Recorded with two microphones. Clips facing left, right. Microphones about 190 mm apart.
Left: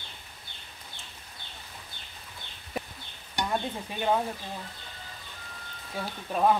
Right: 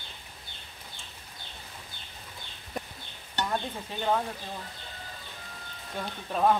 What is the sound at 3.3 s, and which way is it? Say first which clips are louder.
Stir: left 1 dB; 10° left (ahead or behind).